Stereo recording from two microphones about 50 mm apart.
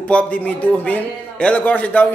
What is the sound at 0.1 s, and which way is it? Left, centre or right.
A man's voice, left.